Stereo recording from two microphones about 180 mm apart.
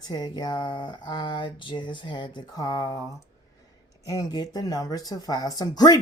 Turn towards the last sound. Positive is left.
turn(degrees=20)  # may be behind; listen again after turning